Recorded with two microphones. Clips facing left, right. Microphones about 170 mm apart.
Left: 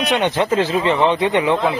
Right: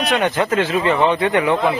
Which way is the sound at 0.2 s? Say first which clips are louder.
Left 1 dB; 25° left (ahead or behind).